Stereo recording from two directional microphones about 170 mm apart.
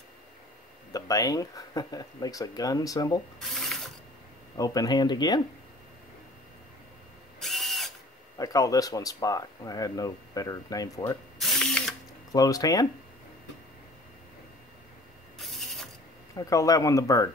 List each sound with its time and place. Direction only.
0.9 s speech: 20° left (ahead or behind)
3.3 s ratchet: centre (ahead or behind)
4.6 s speech: 20° left (ahead or behind)
7.3 s drill: centre (ahead or behind)
8.4 s speech: 20° left (ahead or behind)
11.3 s ratchet: centre (ahead or behind)
12.3 s speech: 20° left (ahead or behind)
15.3 s mechanisms: centre (ahead or behind)
16.3 s speech: 20° left (ahead or behind)